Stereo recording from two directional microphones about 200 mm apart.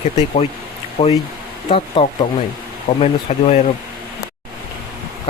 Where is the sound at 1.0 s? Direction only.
25° left (ahead or behind).